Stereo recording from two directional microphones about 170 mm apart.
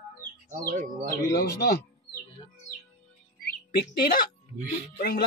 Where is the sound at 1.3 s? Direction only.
75° left (ahead or behind).